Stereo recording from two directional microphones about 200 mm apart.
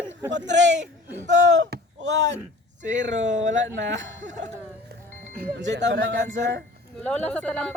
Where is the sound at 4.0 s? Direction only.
40° right (ahead or behind).